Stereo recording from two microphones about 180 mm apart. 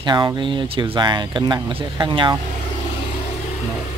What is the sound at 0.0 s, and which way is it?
Speech, 25° right (ahead or behind).